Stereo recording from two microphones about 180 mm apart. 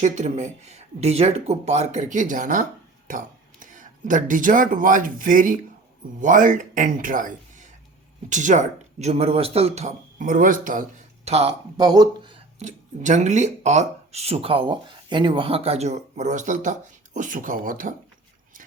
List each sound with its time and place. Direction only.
0.0 s speech: 40° right (ahead or behind)
11.3 s speech: 35° right (ahead or behind)
11.8 s speech: 20° right (ahead or behind)
12.5 s speech: 40° right (ahead or behind)